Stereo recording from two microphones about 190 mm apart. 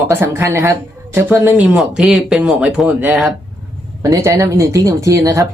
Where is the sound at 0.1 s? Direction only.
10° right (ahead or behind).